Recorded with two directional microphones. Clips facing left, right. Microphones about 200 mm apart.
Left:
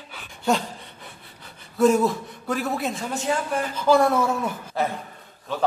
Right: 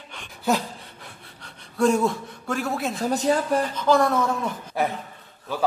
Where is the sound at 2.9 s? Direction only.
35° right (ahead or behind).